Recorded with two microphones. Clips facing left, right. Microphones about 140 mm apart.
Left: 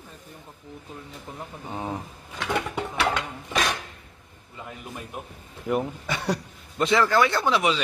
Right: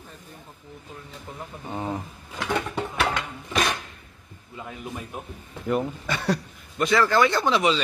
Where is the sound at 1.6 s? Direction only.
5° left (ahead or behind).